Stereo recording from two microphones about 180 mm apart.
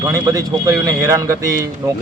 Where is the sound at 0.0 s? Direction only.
20° right (ahead or behind).